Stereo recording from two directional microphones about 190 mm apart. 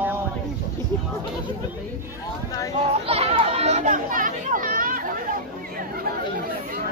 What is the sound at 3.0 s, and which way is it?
Speech, 30° right (ahead or behind).